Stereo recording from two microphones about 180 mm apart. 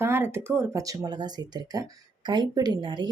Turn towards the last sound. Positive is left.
turn(degrees=-25)  # may be behind; listen again after turning